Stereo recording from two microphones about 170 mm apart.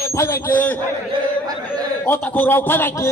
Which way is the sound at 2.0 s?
10° left (ahead or behind).